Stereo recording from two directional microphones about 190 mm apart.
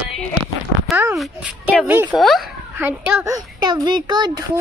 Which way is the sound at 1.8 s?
10° right (ahead or behind).